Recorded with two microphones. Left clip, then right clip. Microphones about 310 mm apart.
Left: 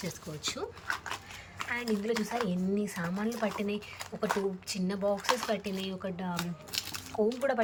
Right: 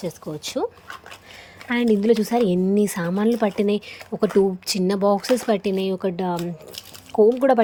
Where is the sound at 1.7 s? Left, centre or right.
Right.